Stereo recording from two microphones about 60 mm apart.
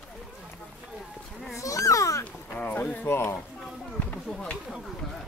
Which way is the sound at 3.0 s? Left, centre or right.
Left.